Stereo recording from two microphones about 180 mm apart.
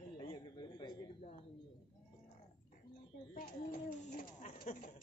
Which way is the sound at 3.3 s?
50° left (ahead or behind).